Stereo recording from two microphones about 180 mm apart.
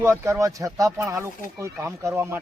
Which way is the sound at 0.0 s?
15° right (ahead or behind).